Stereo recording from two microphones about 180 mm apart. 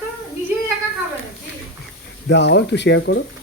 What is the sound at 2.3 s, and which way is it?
Speech, 75° left (ahead or behind).